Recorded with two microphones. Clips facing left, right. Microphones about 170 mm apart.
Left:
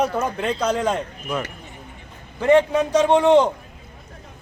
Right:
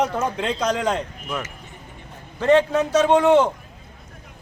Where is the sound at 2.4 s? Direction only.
10° left (ahead or behind).